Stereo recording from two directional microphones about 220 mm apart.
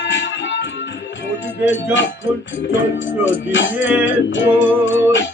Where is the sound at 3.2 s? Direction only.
60° left (ahead or behind).